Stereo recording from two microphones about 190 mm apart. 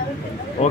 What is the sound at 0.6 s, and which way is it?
Speech, 35° left (ahead or behind).